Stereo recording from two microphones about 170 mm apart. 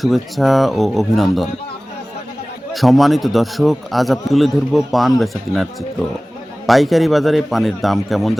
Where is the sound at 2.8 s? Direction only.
Centre (ahead or behind).